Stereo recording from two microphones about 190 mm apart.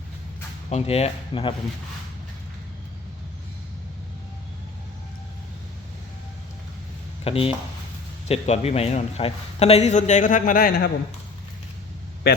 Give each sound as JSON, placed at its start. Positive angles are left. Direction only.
{"t": 0.7, "sound": "a man's voice", "side_deg": 35}
{"t": 7.3, "sound": "a man's voice", "side_deg": 30}
{"t": 12.2, "sound": "a man's voice", "side_deg": 55}